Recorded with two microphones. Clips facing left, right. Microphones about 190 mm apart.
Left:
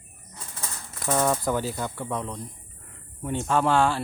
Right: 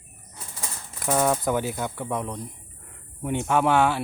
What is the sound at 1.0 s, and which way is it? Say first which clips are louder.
A man's voice: right 1 dB; 5° right (ahead or behind).